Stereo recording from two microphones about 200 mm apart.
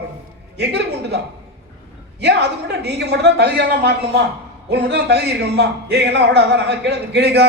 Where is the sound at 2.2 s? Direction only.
55° right (ahead or behind).